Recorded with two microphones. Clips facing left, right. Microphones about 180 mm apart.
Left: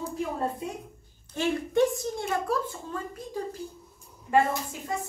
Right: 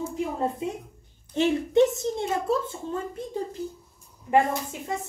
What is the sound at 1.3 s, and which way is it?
A woman's voice, 20° right (ahead or behind).